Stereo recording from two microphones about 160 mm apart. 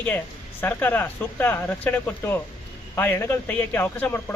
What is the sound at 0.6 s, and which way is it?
Speech, 15° left (ahead or behind).